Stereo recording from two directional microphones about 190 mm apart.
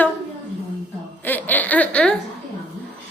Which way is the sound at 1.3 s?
10° left (ahead or behind).